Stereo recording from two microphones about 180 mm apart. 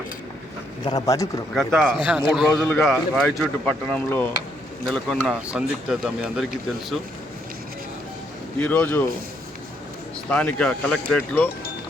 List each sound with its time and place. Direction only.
0.9 s a man's voice: 20° left (ahead or behind)
1.5 s speech: centre (ahead or behind)
8.5 s speech: 10° left (ahead or behind)
10.2 s speech: 5° left (ahead or behind)